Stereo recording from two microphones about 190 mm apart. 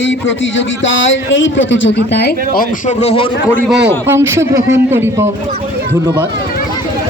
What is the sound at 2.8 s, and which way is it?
Speech, 30° left (ahead or behind).